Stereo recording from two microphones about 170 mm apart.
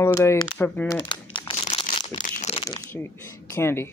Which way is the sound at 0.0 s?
15° left (ahead or behind).